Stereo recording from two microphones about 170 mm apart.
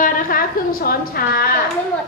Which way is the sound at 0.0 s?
55° left (ahead or behind).